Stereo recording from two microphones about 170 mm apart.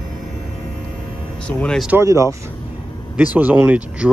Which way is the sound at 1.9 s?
15° right (ahead or behind).